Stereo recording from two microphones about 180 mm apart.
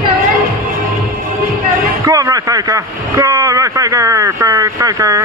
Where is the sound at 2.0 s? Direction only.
20° right (ahead or behind).